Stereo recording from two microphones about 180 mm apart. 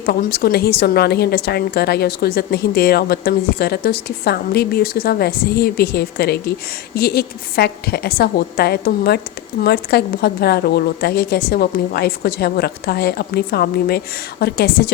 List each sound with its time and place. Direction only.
0.0 s a woman's voice: 55° left (ahead or behind)